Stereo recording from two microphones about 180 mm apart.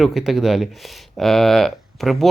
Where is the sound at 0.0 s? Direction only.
Centre (ahead or behind).